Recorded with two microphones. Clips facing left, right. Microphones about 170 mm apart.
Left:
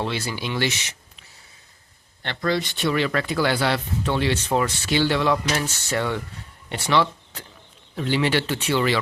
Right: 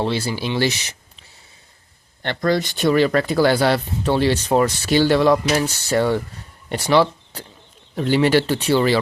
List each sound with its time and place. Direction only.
0.0 s speech: 30° right (ahead or behind)
2.2 s speech: 45° right (ahead or behind)